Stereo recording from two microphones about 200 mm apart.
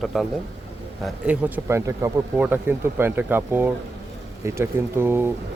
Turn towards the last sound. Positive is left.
turn(degrees=-10)  # may be behind; listen again after turning